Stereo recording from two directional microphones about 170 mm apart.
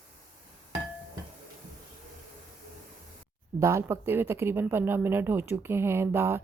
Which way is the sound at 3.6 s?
15° right (ahead or behind).